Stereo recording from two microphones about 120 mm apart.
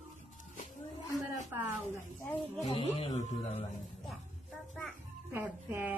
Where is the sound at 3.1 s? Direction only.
80° left.